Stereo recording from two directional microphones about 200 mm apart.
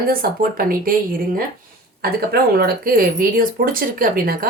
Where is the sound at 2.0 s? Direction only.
50° right (ahead or behind).